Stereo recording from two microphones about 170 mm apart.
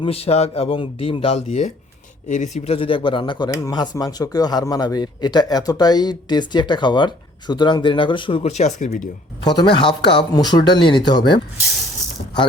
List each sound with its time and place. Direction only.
0.0 s speech: 35° left (ahead or behind)
9.4 s speech: 25° left (ahead or behind)